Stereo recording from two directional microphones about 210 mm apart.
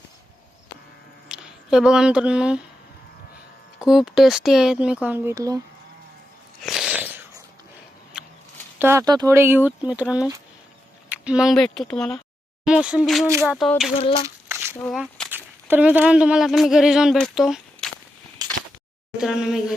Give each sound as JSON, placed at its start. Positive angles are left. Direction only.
{"t": 1.3, "sound": "speech", "side_deg": -5}
{"t": 3.8, "sound": "speech", "side_deg": -5}
{"t": 6.6, "sound": "a sound", "side_deg": 0}
{"t": 8.8, "sound": "speech", "side_deg": -10}
{"t": 14.0, "sound": "speech", "side_deg": 25}
{"t": 14.3, "sound": "a sound", "side_deg": -10}
{"t": 14.8, "sound": "speech", "side_deg": 0}
{"t": 18.4, "sound": "a sound", "side_deg": -15}
{"t": 19.1, "sound": "speech", "side_deg": -5}